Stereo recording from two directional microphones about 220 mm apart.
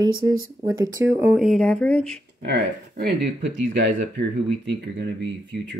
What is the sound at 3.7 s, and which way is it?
Speech, 55° right (ahead or behind).